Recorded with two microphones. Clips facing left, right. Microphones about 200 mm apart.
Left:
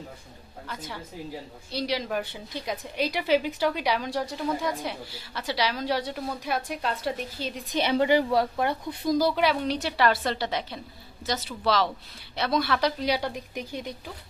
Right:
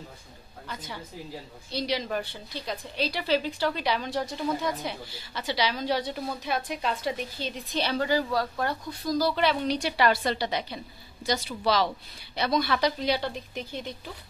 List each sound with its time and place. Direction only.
0.7 s a woman's voice: 5° left (ahead or behind)
7.7 s speech: 20° left (ahead or behind)
9.4 s a woman's voice: 5° left (ahead or behind)